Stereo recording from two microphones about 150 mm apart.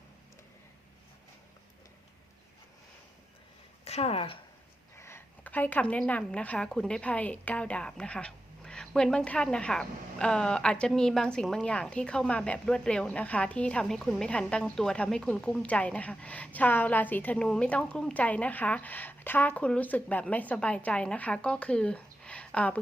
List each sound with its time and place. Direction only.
3.8 s a woman's voice: 45° left (ahead or behind)
4.9 s a woman's voice: 15° left (ahead or behind)